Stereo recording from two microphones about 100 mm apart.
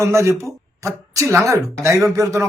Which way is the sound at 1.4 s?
30° right (ahead or behind).